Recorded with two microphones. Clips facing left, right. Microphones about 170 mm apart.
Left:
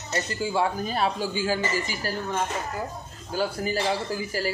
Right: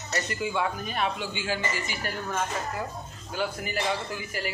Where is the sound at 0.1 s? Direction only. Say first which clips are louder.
Left 3 dB; 30° left (ahead or behind).